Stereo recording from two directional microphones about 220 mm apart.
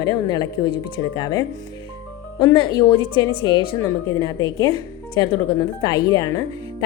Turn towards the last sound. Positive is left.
turn(degrees=15)  # may be behind; listen again after turning